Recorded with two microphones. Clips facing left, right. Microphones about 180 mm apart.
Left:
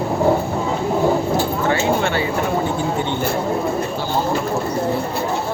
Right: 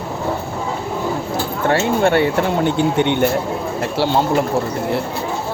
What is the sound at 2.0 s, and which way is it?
Speech, 65° right (ahead or behind).